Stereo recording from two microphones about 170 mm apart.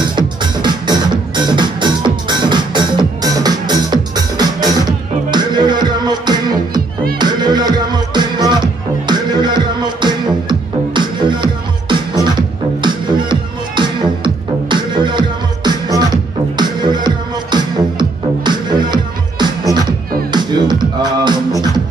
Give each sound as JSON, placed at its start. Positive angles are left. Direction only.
{"t": 0.0, "sound": "music", "side_deg": -25}